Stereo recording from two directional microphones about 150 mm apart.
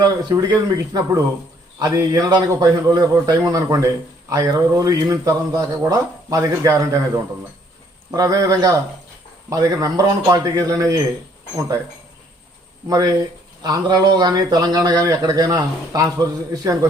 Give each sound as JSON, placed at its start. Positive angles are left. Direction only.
{"t": 0.0, "sound": "a man's voice", "side_deg": -25}
{"t": 8.1, "sound": "a man's voice", "side_deg": -25}
{"t": 12.9, "sound": "a man's voice", "side_deg": -25}